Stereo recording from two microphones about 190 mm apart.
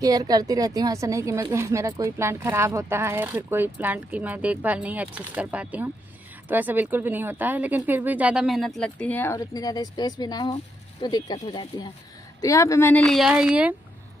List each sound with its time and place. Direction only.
0.0 s a woman's voice: 20° right (ahead or behind); by 11.3 s 20° left (ahead or behind)
12.4 s a woman's voice: 15° left (ahead or behind); by 13.7 s 5° right (ahead or behind)